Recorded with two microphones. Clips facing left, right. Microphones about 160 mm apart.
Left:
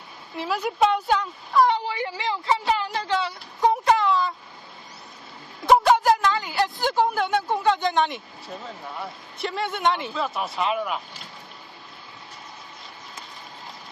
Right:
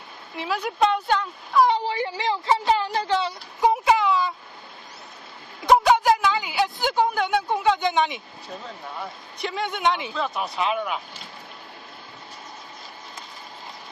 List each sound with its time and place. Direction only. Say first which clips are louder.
0.4 s a woman's voice: left 1 dB; 5° left (ahead or behind)
1.9 s speech: right 2 dB; 30° right (ahead or behind)
3.6 s a sound: even; 5° right (ahead or behind)
5.6 s a woman's voice: even; centre (ahead or behind)